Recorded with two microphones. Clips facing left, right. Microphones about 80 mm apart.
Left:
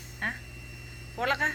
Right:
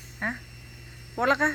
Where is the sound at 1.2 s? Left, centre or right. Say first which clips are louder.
Right 5 dB; right.